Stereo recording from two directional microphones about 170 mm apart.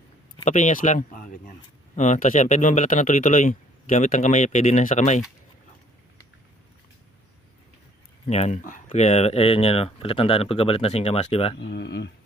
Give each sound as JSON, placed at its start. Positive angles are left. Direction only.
{"t": 0.4, "sound": "speech", "side_deg": 45}
{"t": 8.3, "sound": "speech", "side_deg": 40}
{"t": 11.6, "sound": "speech", "side_deg": 80}